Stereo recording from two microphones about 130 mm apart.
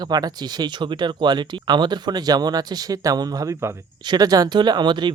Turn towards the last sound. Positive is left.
turn(degrees=-35)  # may be behind; listen again after turning